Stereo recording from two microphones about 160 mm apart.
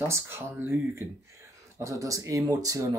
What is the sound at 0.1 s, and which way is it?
Speech, 15° right (ahead or behind).